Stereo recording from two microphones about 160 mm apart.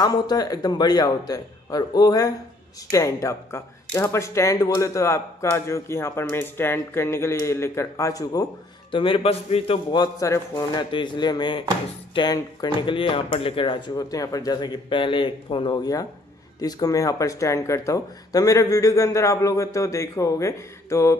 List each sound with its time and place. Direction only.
0.0 s speech: 25° left (ahead or behind)
8.9 s speech: 35° left (ahead or behind); by 21.2 s 20° left (ahead or behind)